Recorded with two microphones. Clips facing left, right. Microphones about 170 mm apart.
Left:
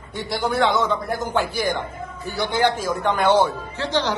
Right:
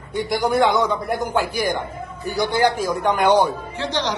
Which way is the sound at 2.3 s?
10° right (ahead or behind).